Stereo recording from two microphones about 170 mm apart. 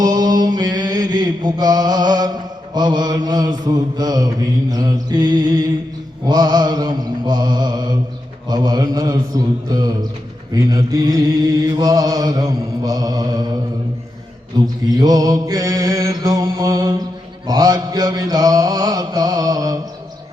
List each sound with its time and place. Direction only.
0.0 s mantra: 20° right (ahead or behind)
14.8 s mantra: 20° right (ahead or behind)